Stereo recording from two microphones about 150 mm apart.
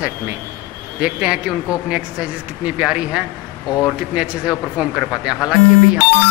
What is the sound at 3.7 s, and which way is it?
Speech, 20° left (ahead or behind).